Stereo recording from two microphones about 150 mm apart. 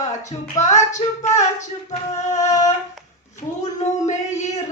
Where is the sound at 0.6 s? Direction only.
20° left (ahead or behind).